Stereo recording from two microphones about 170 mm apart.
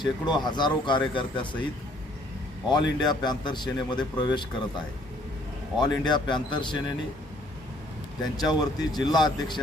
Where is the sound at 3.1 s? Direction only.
25° left (ahead or behind).